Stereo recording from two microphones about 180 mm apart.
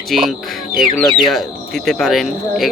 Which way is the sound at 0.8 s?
5° left (ahead or behind).